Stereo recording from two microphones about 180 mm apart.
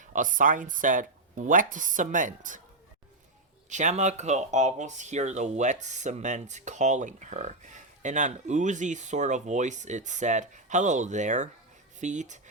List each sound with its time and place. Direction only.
0.0 s speech: 45° right (ahead or behind)
3.7 s speech: 40° right (ahead or behind)